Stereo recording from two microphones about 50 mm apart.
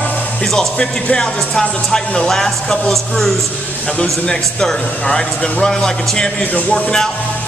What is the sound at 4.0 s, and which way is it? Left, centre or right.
Speech, centre.